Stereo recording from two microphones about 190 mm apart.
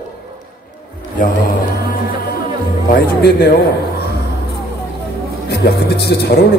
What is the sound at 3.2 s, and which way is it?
Speech, 55° left (ahead or behind).